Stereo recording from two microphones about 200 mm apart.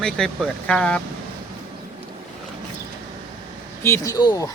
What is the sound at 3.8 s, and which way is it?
Speech, 15° left (ahead or behind).